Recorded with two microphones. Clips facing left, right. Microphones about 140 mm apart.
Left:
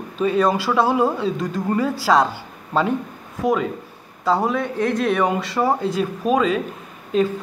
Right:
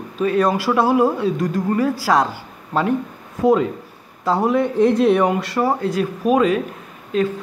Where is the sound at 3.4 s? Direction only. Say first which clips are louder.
Right 4 dB; 25° right (ahead or behind).